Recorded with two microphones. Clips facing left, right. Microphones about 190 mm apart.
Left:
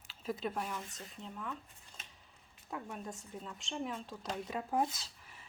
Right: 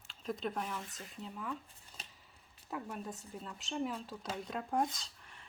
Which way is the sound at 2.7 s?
Centre (ahead or behind).